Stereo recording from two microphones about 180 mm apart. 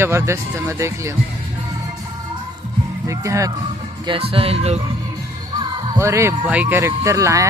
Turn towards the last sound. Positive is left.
turn(degrees=-15)  # may be behind; listen again after turning